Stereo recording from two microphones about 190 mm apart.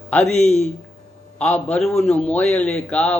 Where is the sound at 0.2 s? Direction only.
35° left (ahead or behind).